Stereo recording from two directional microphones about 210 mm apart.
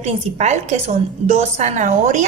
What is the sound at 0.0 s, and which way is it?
A woman's voice, 30° right (ahead or behind).